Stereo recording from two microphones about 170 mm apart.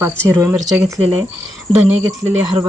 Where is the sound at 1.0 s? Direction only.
35° right (ahead or behind).